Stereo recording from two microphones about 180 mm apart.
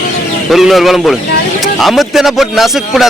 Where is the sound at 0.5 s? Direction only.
Centre (ahead or behind).